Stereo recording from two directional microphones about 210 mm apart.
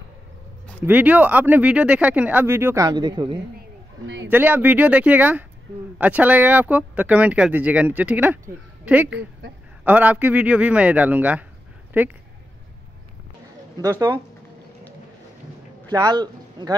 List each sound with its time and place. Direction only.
0.8 s speech: 10° right (ahead or behind)
4.3 s speech: 10° right (ahead or behind)
13.7 s speech: 15° right (ahead or behind)
15.9 s speech: 20° right (ahead or behind)